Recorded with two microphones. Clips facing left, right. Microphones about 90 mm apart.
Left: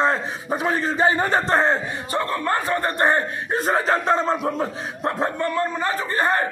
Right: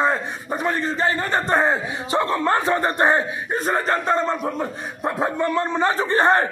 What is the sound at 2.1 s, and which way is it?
Speech, 20° right (ahead or behind).